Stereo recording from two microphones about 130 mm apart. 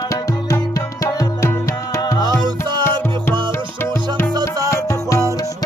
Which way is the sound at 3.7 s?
15° left (ahead or behind).